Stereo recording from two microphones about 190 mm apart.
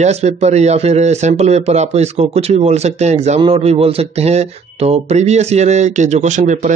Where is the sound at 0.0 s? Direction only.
35° right (ahead or behind).